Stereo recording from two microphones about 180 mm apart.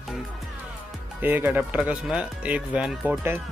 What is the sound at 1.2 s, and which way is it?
A man's voice, 10° right (ahead or behind).